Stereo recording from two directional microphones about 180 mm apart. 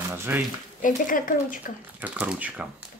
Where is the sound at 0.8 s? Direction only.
50° left (ahead or behind).